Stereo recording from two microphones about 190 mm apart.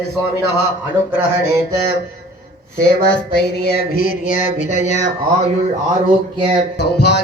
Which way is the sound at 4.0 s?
45° left (ahead or behind).